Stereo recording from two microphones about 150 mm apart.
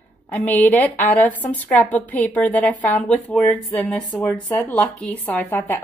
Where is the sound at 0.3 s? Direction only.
10° left (ahead or behind).